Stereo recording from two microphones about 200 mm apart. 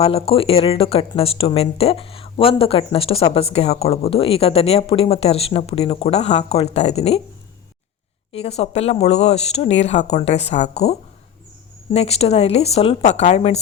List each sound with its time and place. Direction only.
0.0 s speech: 30° left (ahead or behind)
8.3 s speech: 30° left (ahead or behind)